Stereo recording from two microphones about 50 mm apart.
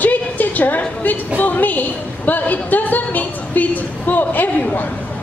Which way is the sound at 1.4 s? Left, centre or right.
Left.